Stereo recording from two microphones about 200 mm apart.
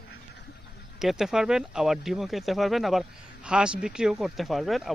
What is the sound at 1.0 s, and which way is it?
Speech, centre (ahead or behind).